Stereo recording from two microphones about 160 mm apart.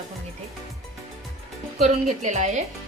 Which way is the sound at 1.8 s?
50° right (ahead or behind).